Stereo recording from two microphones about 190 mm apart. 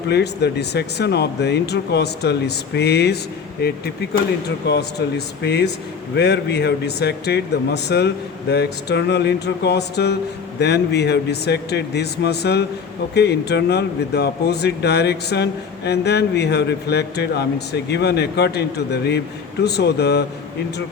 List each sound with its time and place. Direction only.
0.1 s speech: 60° left (ahead or behind)